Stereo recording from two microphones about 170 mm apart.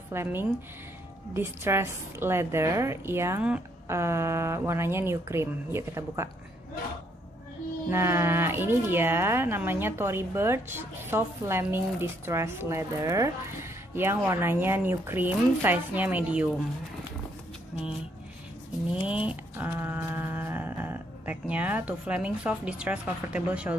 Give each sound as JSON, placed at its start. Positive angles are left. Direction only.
{"t": 0.1, "sound": "speech", "side_deg": -15}
{"t": 7.9, "sound": "speech", "side_deg": -15}
{"t": 19.0, "sound": "a sound", "side_deg": -5}